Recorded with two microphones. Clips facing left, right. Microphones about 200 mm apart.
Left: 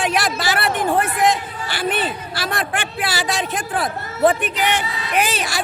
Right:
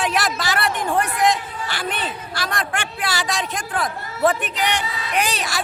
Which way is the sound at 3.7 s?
30° left (ahead or behind).